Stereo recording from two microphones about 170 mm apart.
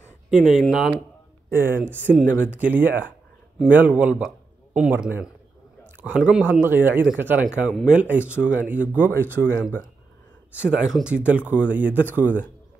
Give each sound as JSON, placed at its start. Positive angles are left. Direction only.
{"t": 0.3, "sound": "a man's voice", "side_deg": -5}